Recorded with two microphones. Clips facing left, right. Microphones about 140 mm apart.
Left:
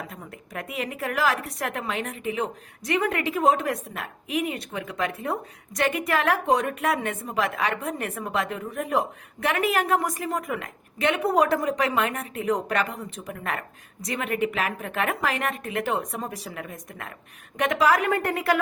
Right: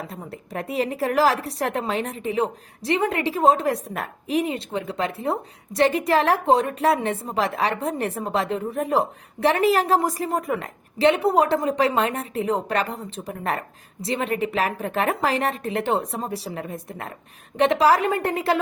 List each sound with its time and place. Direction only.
0.1 s a woman's voice: 35° right (ahead or behind)